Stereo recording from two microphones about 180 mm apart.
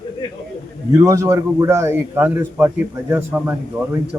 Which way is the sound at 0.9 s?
15° right (ahead or behind).